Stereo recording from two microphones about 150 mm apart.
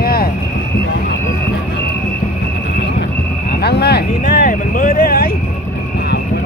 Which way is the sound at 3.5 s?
90° left.